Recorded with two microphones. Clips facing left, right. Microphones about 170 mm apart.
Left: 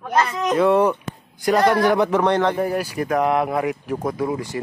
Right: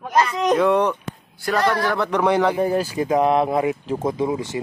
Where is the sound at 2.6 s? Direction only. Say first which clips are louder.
Right 2 dB; 25° right (ahead or behind).